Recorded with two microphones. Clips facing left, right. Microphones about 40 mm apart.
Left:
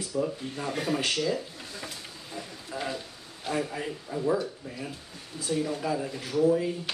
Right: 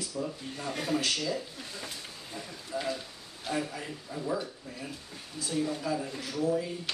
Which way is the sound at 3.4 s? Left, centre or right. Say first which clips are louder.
Left 3 dB; centre.